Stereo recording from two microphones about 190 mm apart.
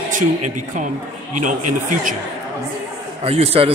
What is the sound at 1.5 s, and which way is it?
Speech, 40° right (ahead or behind).